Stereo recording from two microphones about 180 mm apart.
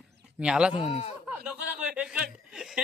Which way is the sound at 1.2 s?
5° right (ahead or behind).